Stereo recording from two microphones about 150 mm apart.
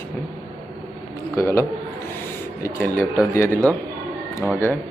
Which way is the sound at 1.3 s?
20° left (ahead or behind).